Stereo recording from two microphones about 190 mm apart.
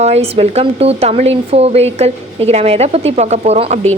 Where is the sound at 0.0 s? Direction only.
35° right (ahead or behind).